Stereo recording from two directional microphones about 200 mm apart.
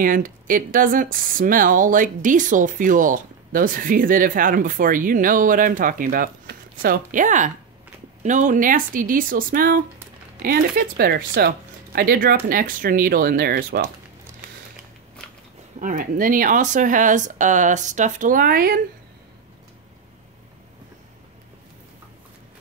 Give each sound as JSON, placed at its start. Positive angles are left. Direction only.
{"t": 0.0, "sound": "speech", "side_deg": -45}
{"t": 15.8, "sound": "speech", "side_deg": -45}